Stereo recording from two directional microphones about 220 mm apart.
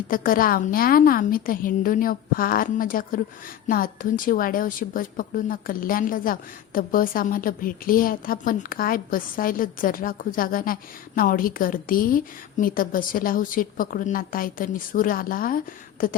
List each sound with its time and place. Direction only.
0.1 s a woman's voice: 40° left (ahead or behind)